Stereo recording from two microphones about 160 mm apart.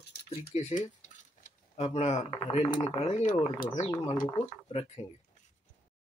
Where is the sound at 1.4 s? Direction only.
40° left (ahead or behind).